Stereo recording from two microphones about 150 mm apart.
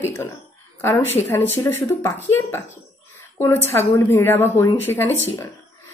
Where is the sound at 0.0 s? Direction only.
15° left (ahead or behind).